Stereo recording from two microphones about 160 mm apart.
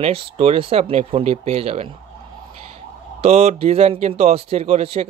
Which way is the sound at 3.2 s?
40° right (ahead or behind).